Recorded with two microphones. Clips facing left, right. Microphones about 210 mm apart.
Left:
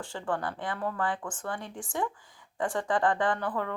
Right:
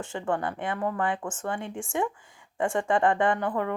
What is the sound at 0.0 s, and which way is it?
A woman's voice, 20° right (ahead or behind).